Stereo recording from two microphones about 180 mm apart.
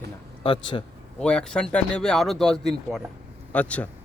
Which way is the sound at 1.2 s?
5° left (ahead or behind).